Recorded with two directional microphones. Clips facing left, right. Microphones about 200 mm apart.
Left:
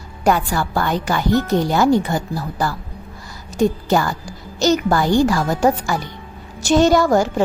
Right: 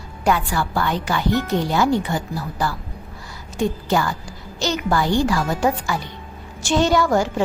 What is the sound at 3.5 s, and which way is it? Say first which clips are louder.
A woman's voice: left 4 dB; 45° left (ahead or behind).